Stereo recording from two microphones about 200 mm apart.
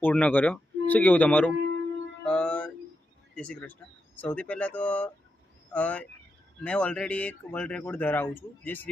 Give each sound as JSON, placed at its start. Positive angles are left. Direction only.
{"t": 0.0, "sound": "speech", "side_deg": 10}
{"t": 2.2, "sound": "music", "side_deg": 5}
{"t": 3.3, "sound": "speech", "side_deg": 5}